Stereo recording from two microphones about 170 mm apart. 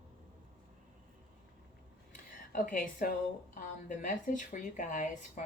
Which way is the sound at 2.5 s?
50° left (ahead or behind).